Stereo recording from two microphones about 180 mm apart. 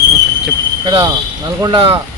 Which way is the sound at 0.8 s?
25° right (ahead or behind).